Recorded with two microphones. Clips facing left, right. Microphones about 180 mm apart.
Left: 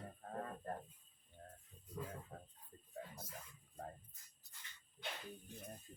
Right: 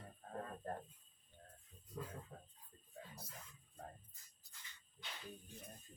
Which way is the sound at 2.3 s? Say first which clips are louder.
Left 3 dB; 50° left (ahead or behind).